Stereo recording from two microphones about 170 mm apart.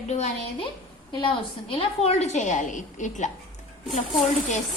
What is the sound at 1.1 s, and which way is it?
A woman's voice, 30° left (ahead or behind).